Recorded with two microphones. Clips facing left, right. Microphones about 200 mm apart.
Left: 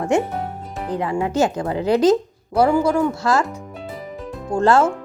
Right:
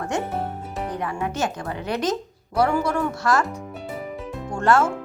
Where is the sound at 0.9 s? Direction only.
20° left (ahead or behind).